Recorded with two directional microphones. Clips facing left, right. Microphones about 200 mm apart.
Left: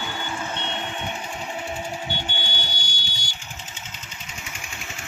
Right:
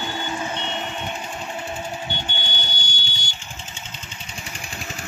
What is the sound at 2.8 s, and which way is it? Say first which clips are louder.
Vehicle: right 2 dB; 20° right (ahead or behind).